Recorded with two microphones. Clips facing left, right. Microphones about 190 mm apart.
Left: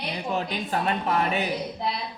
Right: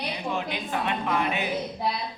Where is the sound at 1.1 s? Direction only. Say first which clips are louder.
Left 2 dB; 40° left (ahead or behind).